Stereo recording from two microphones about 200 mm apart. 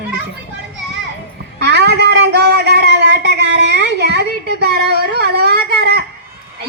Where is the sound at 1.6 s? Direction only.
55° right (ahead or behind).